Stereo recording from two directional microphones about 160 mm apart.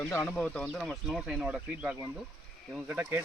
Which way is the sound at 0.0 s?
15° left (ahead or behind).